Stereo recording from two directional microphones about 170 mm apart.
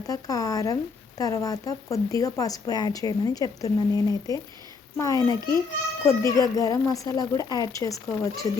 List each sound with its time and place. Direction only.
0.1 s speech: 20° left (ahead or behind)